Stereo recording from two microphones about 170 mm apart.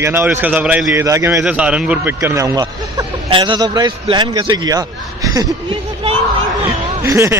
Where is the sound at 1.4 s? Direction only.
5° right (ahead or behind).